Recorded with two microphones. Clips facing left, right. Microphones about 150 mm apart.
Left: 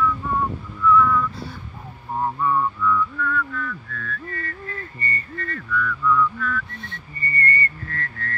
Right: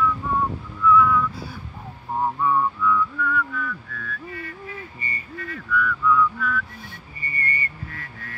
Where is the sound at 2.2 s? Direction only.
5° right (ahead or behind).